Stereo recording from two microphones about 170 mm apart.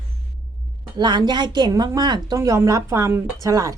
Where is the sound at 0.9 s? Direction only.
25° right (ahead or behind).